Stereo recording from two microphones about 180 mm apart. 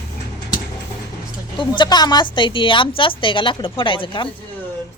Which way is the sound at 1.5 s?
25° left (ahead or behind).